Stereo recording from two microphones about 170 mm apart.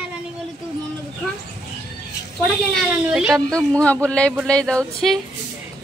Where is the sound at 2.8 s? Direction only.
5° right (ahead or behind).